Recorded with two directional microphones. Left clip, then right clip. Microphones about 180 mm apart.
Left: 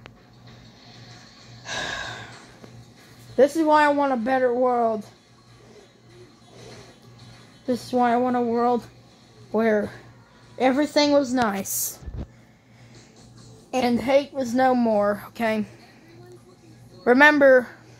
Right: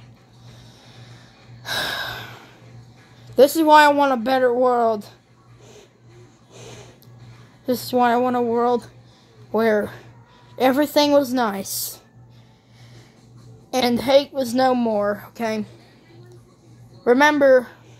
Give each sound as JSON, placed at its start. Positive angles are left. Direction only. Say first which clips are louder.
{"t": 1.7, "sound": "a sound", "louder": "right 5 dB", "side_deg": -40}
{"t": 3.3, "sound": "speech", "louder": "right 5 dB", "side_deg": -30}
{"t": 7.6, "sound": "speech", "louder": "right 3 dB", "side_deg": -20}
{"t": 9.5, "sound": "speech", "louder": "right 3 dB", "side_deg": -15}
{"t": 13.7, "sound": "speech", "louder": "right 4 dB", "side_deg": -25}
{"t": 14.5, "sound": "speech", "louder": "right 1 dB", "side_deg": -10}
{"t": 14.9, "sound": "a woman's voice", "louder": "even", "side_deg": 0}
{"t": 17.0, "sound": "a woman's voice", "louder": "even", "side_deg": 5}